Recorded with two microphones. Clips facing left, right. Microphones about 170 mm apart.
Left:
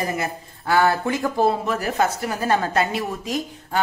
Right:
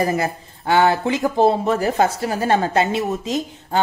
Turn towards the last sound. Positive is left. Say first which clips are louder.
# right 3 dB
turn(degrees=-25)  # may be behind; listen again after turning